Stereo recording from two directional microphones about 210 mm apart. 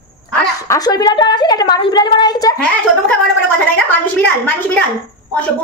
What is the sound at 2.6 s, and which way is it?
A woman's voice, 5° left (ahead or behind).